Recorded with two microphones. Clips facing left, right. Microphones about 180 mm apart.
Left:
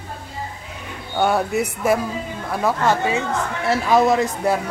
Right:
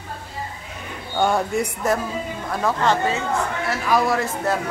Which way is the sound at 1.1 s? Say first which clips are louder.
Left 1 dB; 5° left (ahead or behind).